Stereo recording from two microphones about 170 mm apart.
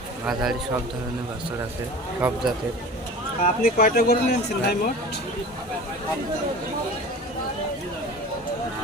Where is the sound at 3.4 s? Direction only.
55° left (ahead or behind).